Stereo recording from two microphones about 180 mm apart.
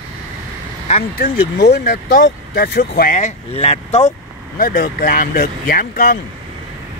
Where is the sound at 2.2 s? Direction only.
60° left (ahead or behind).